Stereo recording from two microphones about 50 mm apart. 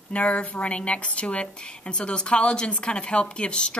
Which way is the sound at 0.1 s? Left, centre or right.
Left.